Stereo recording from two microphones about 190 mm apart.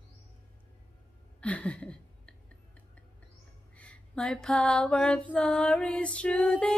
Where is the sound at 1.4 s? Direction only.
5° left (ahead or behind).